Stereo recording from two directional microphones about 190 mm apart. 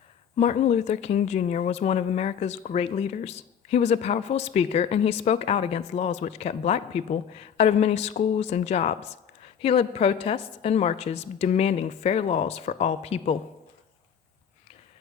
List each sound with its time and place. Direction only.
0.3 s speech: 35° left (ahead or behind)